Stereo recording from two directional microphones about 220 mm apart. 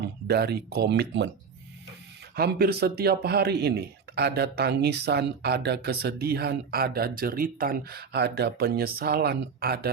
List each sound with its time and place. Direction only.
0.3 s speech: 45° right (ahead or behind)
2.3 s speech: 45° right (ahead or behind)